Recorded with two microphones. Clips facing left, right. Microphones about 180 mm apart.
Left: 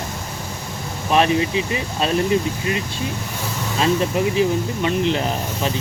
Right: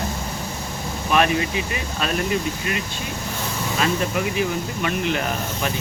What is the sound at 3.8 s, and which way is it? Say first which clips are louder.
Speech: left 5 dB; 30° left (ahead or behind).